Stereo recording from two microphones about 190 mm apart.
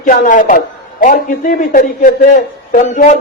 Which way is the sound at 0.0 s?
45° left (ahead or behind).